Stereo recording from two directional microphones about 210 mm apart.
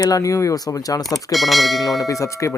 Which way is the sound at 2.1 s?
15° left (ahead or behind).